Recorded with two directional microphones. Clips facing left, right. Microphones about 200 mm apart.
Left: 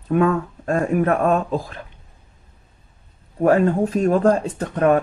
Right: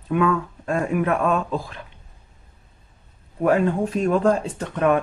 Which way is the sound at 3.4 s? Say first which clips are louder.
Left 3 dB; 40° left (ahead or behind).